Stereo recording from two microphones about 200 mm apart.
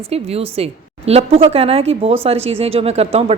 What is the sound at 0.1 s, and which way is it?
A woman's voice, 30° right (ahead or behind).